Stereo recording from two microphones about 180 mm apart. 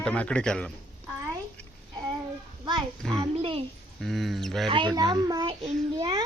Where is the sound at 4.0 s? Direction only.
Centre (ahead or behind).